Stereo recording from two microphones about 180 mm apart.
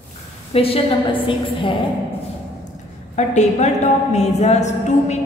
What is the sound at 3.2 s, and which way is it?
A woman's voice, 40° left (ahead or behind).